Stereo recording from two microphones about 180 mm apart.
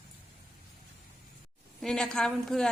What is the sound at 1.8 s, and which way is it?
Speech, 5° left (ahead or behind).